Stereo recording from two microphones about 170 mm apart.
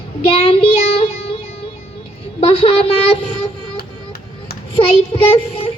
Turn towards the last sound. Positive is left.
turn(degrees=35)  # may be behind; listen again after turning